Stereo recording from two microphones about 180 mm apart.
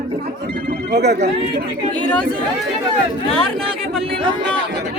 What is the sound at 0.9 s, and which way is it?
Speech, 65° right (ahead or behind).